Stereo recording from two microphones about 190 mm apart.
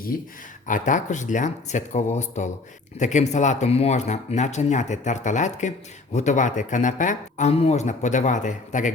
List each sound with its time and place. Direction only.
0.1 s speech: 50° left (ahead or behind)